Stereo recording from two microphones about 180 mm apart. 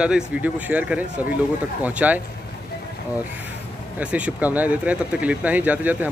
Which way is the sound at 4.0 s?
5° right (ahead or behind).